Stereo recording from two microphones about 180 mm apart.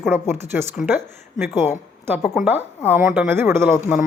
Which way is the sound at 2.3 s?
10° right (ahead or behind).